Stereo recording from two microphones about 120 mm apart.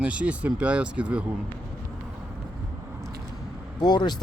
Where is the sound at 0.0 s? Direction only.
10° right (ahead or behind).